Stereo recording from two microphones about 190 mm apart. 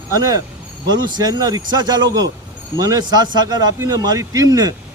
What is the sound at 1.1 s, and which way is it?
A man's voice, 20° right (ahead or behind).